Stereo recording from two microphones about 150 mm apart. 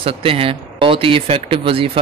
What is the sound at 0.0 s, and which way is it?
Speech, 40° right (ahead or behind).